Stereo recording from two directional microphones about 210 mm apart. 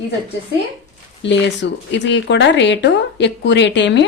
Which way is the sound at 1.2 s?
55° left (ahead or behind).